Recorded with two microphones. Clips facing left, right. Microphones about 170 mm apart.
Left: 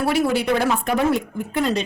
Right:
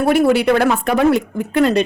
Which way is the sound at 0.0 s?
55° right (ahead or behind).